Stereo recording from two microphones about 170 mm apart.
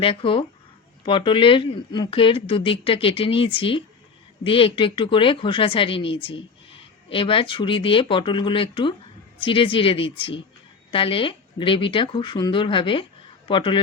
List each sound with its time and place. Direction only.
0.0 s speech: 30° left (ahead or behind)